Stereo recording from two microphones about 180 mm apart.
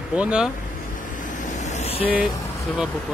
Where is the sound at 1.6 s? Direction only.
40° left (ahead or behind).